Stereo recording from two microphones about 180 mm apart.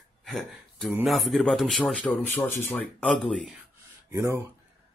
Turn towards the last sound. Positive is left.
turn(degrees=-15)  # may be behind; listen again after turning